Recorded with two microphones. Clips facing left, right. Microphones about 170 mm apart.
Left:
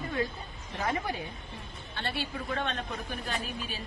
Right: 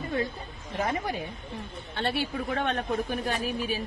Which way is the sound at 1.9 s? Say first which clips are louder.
Right 6 dB; 55° right (ahead or behind).